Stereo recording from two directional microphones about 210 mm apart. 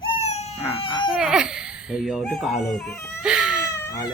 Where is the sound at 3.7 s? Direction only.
15° left (ahead or behind).